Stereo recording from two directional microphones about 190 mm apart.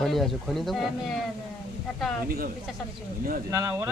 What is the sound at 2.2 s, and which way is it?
Speech, 50° right (ahead or behind).